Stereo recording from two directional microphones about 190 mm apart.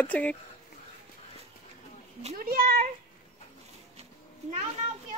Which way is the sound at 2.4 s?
50° right (ahead or behind).